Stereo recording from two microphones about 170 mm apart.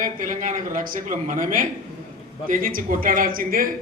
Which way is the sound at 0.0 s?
50° right (ahead or behind).